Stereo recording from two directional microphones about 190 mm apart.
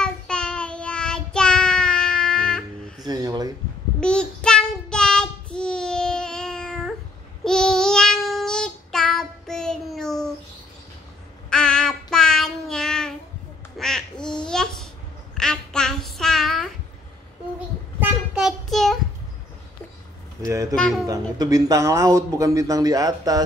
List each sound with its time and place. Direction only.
0.0 s child singing: 5° left (ahead or behind)
3.0 s a sound: 20° right (ahead or behind)
4.0 s child singing: 5° left (ahead or behind)
11.5 s child singing: 5° left (ahead or behind)
13.7 s duck: 5° left (ahead or behind)
15.3 s child singing: 5° left (ahead or behind)
18.0 s child singing: 5° right (ahead or behind)
20.4 s a sound: 15° right (ahead or behind)
20.7 s a sound: 5° left (ahead or behind)
21.1 s speech: 20° right (ahead or behind)